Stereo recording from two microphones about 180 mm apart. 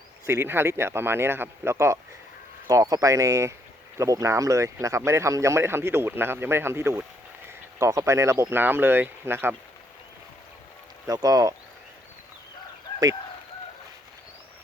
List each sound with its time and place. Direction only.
0.3 s speech: 15° right (ahead or behind)
11.0 s speech: 20° right (ahead or behind)